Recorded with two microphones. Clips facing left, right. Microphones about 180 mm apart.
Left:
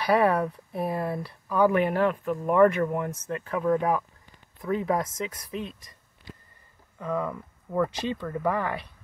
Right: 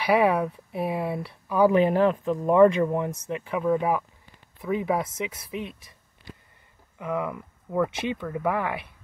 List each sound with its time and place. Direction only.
0.0 s speech: 10° right (ahead or behind)
5.6 s speech: 65° right (ahead or behind)
7.0 s speech: 10° right (ahead or behind)